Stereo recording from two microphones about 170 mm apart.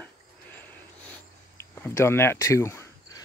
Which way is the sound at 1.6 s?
15° left (ahead or behind).